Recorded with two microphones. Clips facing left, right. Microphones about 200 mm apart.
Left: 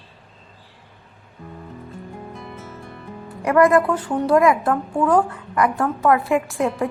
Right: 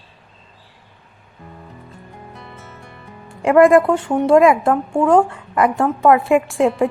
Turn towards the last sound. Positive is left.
turn(degrees=-25)  # may be behind; listen again after turning